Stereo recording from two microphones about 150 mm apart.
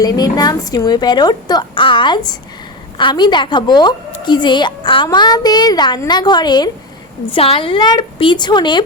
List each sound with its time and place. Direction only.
0.0 s a woman's voice: 25° left (ahead or behind)